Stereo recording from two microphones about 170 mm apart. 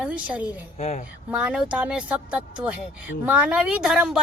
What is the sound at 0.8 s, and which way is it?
Speech, 40° left (ahead or behind).